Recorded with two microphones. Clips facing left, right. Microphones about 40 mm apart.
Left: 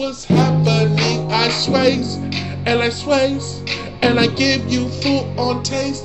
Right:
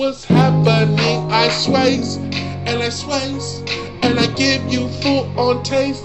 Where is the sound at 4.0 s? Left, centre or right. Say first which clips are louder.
Left 1 dB; centre.